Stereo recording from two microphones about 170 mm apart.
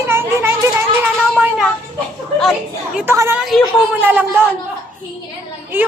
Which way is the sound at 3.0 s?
15° right (ahead or behind).